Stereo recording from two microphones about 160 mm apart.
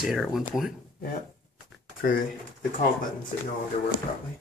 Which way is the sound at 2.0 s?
60° left (ahead or behind).